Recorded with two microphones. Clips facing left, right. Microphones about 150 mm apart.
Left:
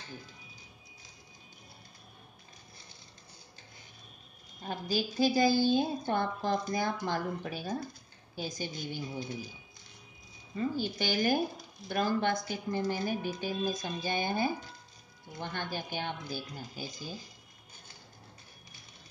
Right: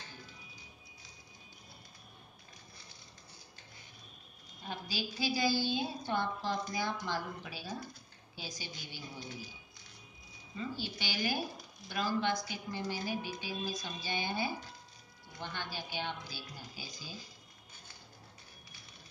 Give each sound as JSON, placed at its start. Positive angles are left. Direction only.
{"t": 4.6, "sound": "a woman's voice", "side_deg": 45}
{"t": 10.5, "sound": "a woman's voice", "side_deg": 50}